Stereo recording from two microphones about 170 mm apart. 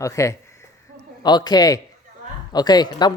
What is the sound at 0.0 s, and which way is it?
Speech, 20° left (ahead or behind).